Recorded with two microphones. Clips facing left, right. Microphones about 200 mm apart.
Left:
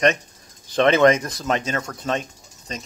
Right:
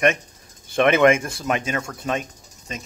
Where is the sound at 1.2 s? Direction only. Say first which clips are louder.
Even; 25° right (ahead or behind).